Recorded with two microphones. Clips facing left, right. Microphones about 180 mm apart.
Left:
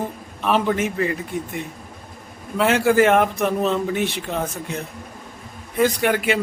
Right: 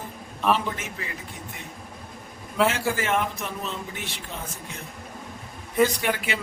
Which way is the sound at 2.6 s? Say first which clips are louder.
Left 9 dB; 60° left (ahead or behind).